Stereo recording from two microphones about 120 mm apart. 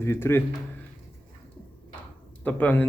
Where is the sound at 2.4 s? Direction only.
15° left (ahead or behind).